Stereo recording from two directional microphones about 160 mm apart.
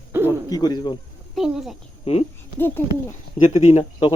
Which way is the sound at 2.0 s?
40° left (ahead or behind).